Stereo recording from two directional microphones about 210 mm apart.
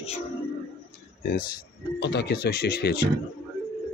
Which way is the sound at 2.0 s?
55° left (ahead or behind).